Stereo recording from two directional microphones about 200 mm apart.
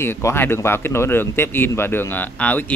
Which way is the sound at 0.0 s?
10° left (ahead or behind).